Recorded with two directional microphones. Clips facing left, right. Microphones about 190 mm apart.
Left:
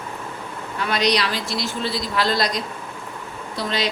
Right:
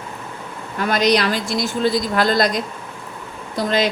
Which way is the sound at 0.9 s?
50° right (ahead or behind).